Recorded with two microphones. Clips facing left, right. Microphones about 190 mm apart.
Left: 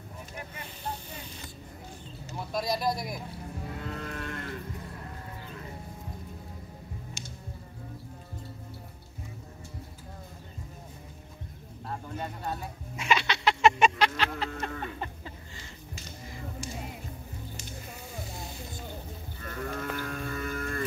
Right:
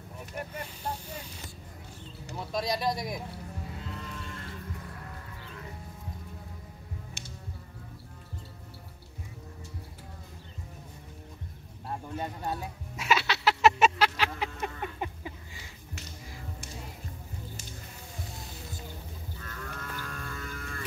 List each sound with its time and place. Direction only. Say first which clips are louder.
2.5 s speech: left 1 dB; centre (ahead or behind)
3.8 s moo: left 5 dB; 60° left (ahead or behind)
7.2 s music: left 2 dB; 60° right (ahead or behind)
11.9 s music: right 1 dB; 10° right (ahead or behind)
14.6 s a sound: even; 15° right (ahead or behind)
19.4 s livestock: left 9 dB; 60° left (ahead or behind)